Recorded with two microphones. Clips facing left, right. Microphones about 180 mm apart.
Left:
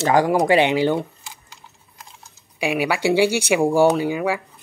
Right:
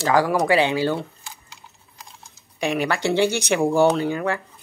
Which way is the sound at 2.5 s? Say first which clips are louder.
Left 1 dB; 10° left (ahead or behind).